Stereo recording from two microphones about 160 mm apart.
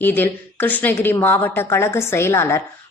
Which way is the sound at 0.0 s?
10° left (ahead or behind).